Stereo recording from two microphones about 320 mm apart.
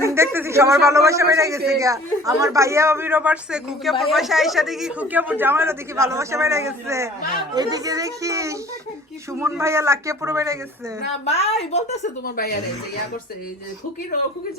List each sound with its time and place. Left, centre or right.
0.0 s speech: centre
11.3 s a woman's voice: centre